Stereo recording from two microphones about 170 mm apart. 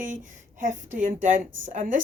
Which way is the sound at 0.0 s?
50° right (ahead or behind).